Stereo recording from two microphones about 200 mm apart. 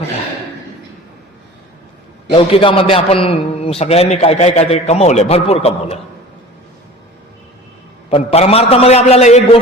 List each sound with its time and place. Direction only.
2.3 s a man's voice: 25° left (ahead or behind)
8.1 s a man's voice: 30° left (ahead or behind)